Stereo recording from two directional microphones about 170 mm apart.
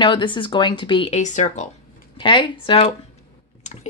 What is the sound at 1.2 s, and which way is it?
Speech, 45° left (ahead or behind).